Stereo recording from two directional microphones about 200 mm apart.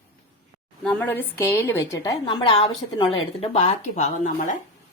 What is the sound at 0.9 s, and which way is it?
A woman's voice, 10° left (ahead or behind).